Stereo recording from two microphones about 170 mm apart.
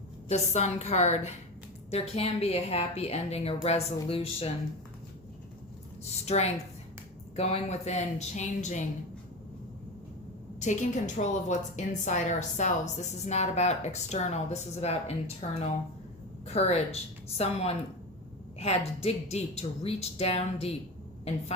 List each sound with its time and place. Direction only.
0.3 s a woman's voice: 40° left (ahead or behind)
6.1 s a woman's voice: 40° left (ahead or behind)
10.6 s a woman's voice: 45° left (ahead or behind)